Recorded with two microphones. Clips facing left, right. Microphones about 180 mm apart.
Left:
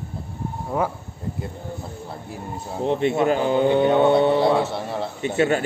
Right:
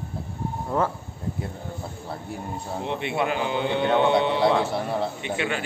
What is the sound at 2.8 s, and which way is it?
A man's voice, 45° left (ahead or behind).